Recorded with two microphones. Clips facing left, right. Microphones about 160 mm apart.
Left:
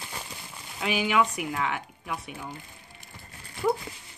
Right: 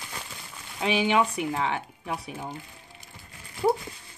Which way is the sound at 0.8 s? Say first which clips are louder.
Right 2 dB; 30° right (ahead or behind).